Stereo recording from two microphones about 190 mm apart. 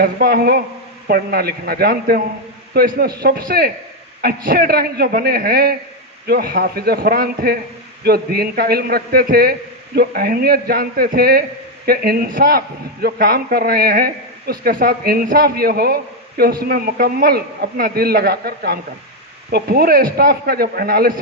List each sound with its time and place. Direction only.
0.0 s a man's voice: 55° right (ahead or behind)